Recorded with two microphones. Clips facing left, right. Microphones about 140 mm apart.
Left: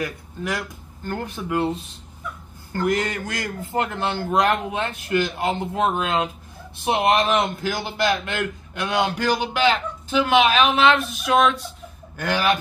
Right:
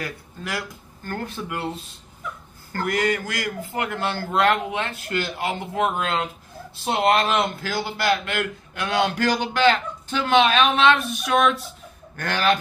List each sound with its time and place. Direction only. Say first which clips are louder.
1.0 s a man's voice: left 2 dB; 15° left (ahead or behind)